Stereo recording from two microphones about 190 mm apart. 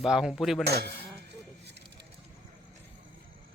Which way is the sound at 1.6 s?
65° right (ahead or behind).